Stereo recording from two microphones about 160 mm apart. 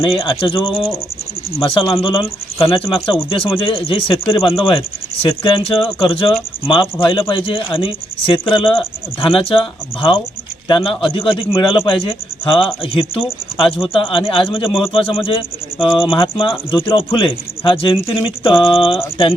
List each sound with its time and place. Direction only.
0.0 s speech: 30° left (ahead or behind)